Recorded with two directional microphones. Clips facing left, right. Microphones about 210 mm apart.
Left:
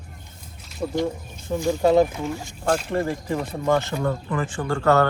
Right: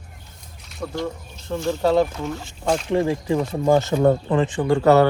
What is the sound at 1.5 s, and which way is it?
Speech, 15° left (ahead or behind).